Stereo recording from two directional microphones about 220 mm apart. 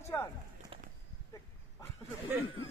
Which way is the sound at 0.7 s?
25° right (ahead or behind).